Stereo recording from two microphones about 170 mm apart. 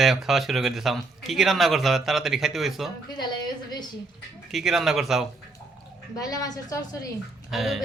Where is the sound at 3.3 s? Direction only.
25° left (ahead or behind).